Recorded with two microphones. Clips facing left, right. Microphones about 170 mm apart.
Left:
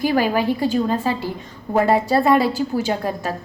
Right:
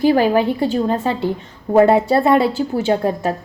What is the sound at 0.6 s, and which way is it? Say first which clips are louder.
A woman's voice: right 2 dB; 25° right (ahead or behind).